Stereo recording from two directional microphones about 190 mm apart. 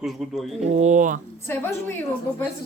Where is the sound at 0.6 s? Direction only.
35° right (ahead or behind).